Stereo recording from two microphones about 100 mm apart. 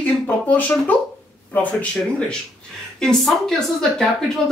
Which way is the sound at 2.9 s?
5° left (ahead or behind).